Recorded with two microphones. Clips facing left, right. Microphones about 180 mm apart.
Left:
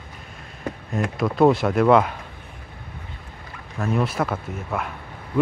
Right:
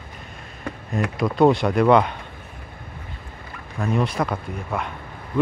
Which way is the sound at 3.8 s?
5° left (ahead or behind).